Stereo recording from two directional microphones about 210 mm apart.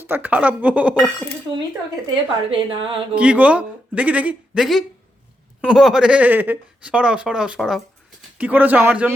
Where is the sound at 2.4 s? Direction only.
25° right (ahead or behind).